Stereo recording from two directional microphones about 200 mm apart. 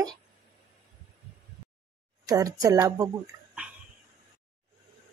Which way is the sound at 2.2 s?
15° right (ahead or behind).